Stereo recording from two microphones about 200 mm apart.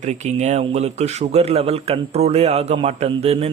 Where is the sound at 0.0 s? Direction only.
35° right (ahead or behind).